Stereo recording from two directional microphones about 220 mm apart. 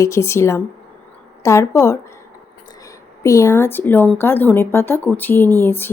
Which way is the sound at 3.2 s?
15° left (ahead or behind).